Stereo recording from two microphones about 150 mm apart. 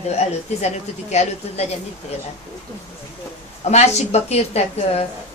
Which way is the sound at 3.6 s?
50° left (ahead or behind).